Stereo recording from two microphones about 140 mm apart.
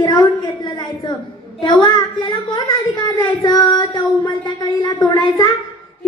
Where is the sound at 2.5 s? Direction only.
20° left (ahead or behind).